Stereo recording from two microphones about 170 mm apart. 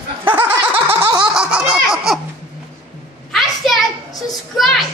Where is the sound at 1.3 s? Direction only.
5° right (ahead or behind).